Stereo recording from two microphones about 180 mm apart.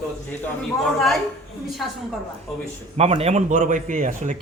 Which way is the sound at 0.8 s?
Centre (ahead or behind).